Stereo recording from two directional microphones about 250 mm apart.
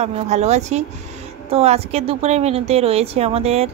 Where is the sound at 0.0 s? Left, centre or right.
Right.